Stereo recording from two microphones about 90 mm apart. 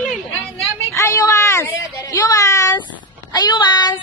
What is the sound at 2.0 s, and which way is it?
Speech, 50° left (ahead or behind).